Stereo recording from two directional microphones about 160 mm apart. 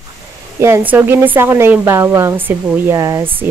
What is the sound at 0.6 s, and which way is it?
Speech, 15° right (ahead or behind).